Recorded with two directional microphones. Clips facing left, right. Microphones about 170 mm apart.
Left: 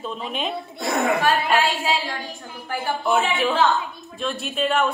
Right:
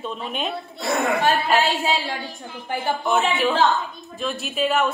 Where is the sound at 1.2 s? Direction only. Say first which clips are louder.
Even; 30° right (ahead or behind).